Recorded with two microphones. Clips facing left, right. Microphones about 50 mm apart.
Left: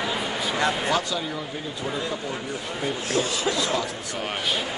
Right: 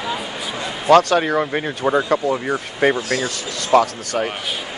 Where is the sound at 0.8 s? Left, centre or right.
Right.